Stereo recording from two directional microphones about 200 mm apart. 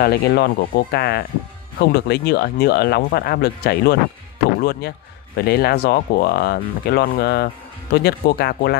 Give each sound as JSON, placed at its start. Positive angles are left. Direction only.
{"t": 0.0, "sound": "speech", "side_deg": 50}